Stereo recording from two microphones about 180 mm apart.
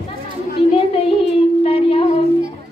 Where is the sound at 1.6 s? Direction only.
30° left (ahead or behind).